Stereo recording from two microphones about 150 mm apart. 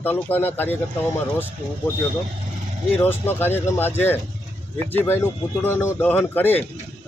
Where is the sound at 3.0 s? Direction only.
15° left (ahead or behind).